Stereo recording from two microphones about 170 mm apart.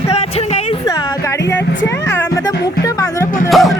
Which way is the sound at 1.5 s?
90° left.